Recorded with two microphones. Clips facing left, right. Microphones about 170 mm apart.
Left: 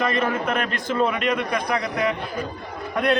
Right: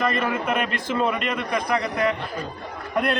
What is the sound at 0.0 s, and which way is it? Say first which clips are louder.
A man's voice: left 1 dB; centre (ahead or behind).